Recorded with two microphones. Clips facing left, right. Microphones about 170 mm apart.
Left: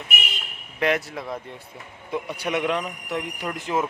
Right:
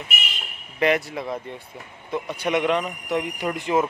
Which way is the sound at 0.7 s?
Centre (ahead or behind).